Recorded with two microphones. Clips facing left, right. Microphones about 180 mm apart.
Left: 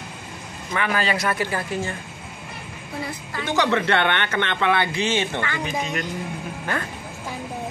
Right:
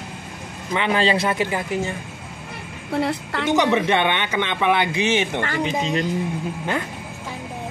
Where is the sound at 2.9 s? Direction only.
70° right (ahead or behind).